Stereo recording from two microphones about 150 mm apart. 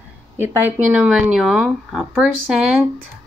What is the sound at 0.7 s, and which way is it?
Speech, 5° right (ahead or behind).